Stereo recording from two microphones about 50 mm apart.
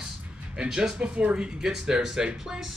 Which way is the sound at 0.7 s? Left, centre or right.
Centre.